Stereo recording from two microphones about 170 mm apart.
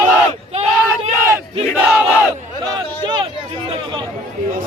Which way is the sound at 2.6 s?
25° right (ahead or behind).